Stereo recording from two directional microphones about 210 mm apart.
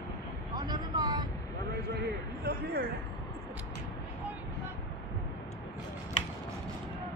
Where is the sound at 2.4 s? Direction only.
45° right (ahead or behind).